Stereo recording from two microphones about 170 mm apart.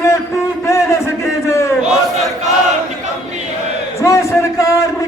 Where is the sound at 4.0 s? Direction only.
15° left (ahead or behind).